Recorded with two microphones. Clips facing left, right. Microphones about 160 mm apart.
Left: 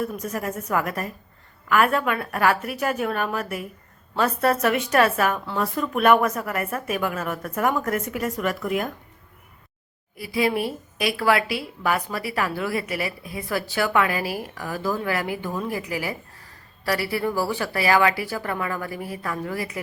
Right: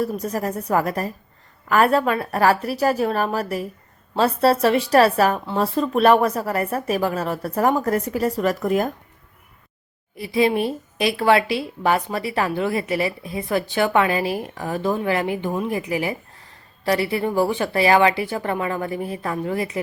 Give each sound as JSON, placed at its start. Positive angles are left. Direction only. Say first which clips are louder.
{"t": 0.0, "sound": "a woman's voice", "louder": "right 4 dB", "side_deg": -35}
{"t": 10.2, "sound": "a woman's voice", "louder": "right 4 dB", "side_deg": -25}